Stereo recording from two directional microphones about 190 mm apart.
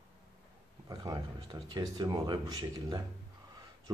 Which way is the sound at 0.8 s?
20° right (ahead or behind).